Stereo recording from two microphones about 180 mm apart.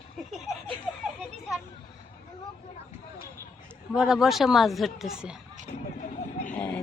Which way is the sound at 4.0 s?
Centre (ahead or behind).